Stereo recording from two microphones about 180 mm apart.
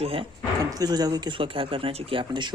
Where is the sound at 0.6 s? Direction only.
20° right (ahead or behind).